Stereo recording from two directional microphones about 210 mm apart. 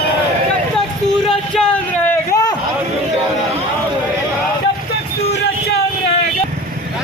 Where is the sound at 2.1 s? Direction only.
15° left (ahead or behind).